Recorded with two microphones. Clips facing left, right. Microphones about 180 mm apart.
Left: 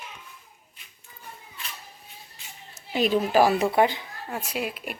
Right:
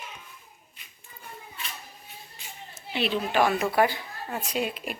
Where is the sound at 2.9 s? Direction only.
40° left (ahead or behind); by 4.0 s 20° left (ahead or behind).